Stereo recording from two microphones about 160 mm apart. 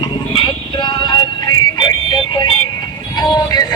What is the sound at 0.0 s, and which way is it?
Music, 30° left (ahead or behind).